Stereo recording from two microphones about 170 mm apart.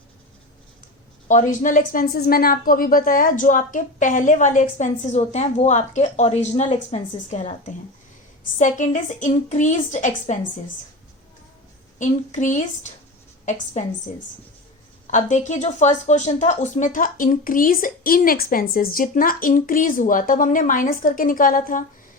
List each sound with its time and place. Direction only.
1.3 s speech: 50° left (ahead or behind)
11.9 s a woman's voice: 45° left (ahead or behind)
15.0 s speech: 45° left (ahead or behind)